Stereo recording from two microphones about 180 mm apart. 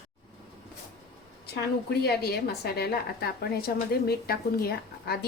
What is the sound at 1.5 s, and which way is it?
A woman's voice, 65° left (ahead or behind).